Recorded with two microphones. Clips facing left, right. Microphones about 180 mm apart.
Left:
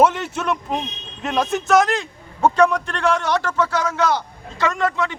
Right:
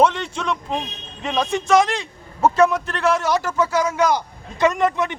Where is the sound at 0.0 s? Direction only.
5° left (ahead or behind).